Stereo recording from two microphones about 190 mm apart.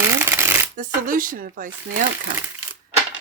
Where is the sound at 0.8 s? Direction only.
45° right (ahead or behind).